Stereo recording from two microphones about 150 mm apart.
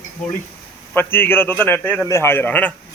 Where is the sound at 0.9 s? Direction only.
15° left (ahead or behind).